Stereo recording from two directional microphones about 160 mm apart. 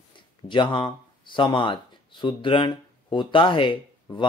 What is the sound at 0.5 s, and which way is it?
Speech, 30° left (ahead or behind).